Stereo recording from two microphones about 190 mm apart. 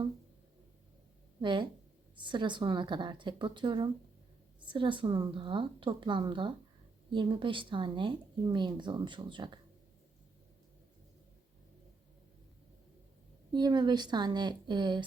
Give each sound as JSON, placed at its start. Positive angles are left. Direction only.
{"t": 1.4, "sound": "speech", "side_deg": -25}
{"t": 13.5, "sound": "speech", "side_deg": -20}